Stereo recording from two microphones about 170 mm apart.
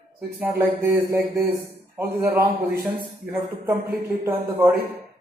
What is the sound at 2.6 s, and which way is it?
Speech, 65° right (ahead or behind).